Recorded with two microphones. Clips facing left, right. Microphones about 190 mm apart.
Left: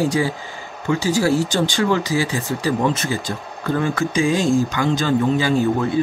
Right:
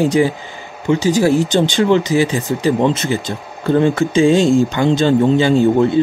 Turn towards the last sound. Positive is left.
turn(degrees=-25)  # may be behind; listen again after turning